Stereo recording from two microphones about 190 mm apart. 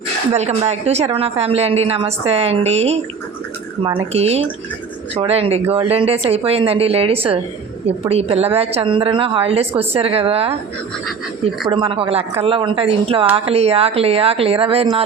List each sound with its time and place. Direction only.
0.3 s a woman's voice: 35° right (ahead or behind)
11.7 s a woman's voice: 25° right (ahead or behind)